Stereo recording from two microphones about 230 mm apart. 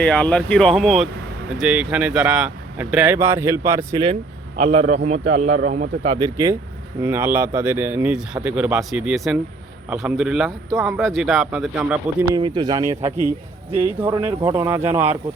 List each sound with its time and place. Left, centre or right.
0.0 s a man's voice: centre; by 6.1 s right
6.1 s a man's voice: centre
12.3 s speech: centre